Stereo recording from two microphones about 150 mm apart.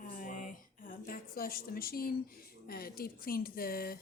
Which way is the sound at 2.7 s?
90° left.